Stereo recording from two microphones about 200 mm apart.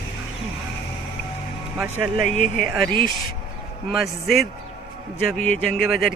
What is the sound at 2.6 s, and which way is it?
Speech, centre (ahead or behind).